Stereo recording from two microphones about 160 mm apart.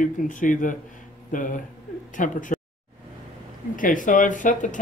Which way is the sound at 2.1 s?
55° left (ahead or behind).